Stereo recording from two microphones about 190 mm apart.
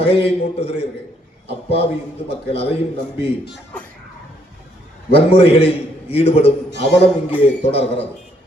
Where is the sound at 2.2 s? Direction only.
30° left (ahead or behind).